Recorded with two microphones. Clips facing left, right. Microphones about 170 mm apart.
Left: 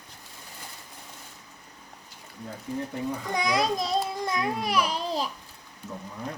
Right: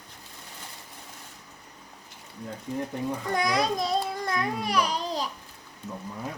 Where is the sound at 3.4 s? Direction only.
Centre (ahead or behind).